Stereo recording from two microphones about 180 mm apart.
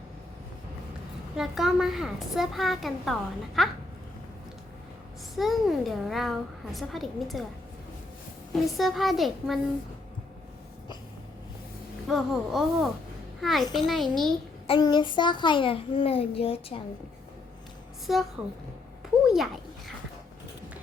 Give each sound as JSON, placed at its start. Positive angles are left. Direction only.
{"t": 1.4, "sound": "a woman's voice", "side_deg": 0}
{"t": 5.3, "sound": "a woman's voice", "side_deg": 0}
{"t": 8.5, "sound": "a woman's voice", "side_deg": 0}
{"t": 12.0, "sound": "a woman's voice", "side_deg": 0}
{"t": 14.7, "sound": "a child's voice", "side_deg": 25}
{"t": 18.0, "sound": "a woman's voice", "side_deg": 0}